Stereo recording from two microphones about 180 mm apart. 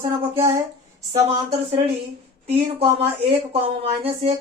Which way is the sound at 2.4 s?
35° right (ahead or behind).